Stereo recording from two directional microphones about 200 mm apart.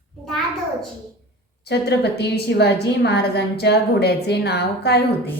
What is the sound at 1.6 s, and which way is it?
A woman's voice, 55° left (ahead or behind).